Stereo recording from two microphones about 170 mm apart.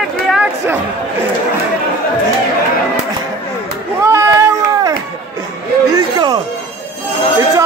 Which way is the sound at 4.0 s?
15° right (ahead or behind).